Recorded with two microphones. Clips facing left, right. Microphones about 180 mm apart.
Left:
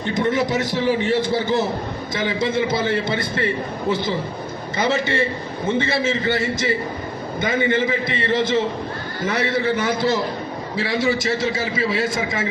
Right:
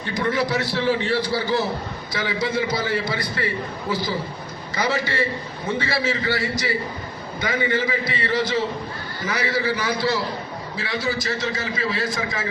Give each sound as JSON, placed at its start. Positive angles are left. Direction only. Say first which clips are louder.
{"t": 0.0, "sound": "a man's voice", "louder": "left 3 dB", "side_deg": 20}